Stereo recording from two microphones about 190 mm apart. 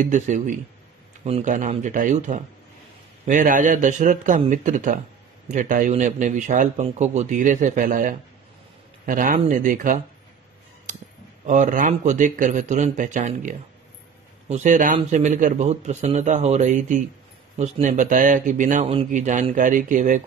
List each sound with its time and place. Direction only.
0.0 s a man's voice: 40° right (ahead or behind)
11.4 s a man's voice: 40° right (ahead or behind)